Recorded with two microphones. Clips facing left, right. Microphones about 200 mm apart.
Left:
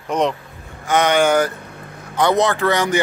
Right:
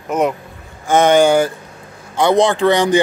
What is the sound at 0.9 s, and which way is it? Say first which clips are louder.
Speech: right 5 dB; 45° right (ahead or behind).